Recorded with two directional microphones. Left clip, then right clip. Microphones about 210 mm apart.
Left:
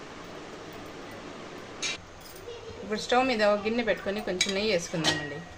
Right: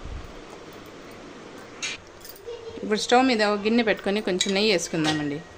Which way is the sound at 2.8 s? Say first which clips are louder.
Right 5 dB; 50° right (ahead or behind).